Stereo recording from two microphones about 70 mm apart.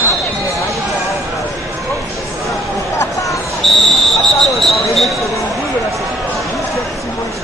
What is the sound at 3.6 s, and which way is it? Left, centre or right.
Speech, centre.